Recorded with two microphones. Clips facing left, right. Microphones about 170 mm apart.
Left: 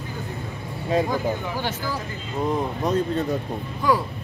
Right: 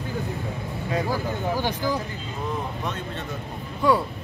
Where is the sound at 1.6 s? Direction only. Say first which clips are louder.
Right 3 dB; 15° right (ahead or behind).